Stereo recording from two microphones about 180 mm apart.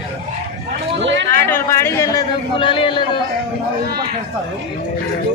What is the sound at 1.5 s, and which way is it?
A man's voice, 15° left (ahead or behind).